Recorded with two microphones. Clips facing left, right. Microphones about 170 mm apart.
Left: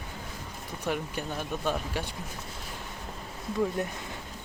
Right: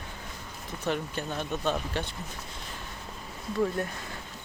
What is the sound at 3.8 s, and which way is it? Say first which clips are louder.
Speech: even; 20° left (ahead or behind).